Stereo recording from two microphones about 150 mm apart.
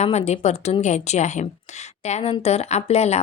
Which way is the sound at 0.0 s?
45° left (ahead or behind).